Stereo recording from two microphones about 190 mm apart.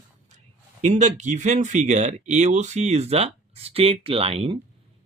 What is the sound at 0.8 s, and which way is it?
Speech, 35° right (ahead or behind).